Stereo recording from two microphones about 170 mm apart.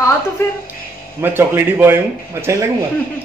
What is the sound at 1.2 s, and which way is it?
Speech, 15° right (ahead or behind).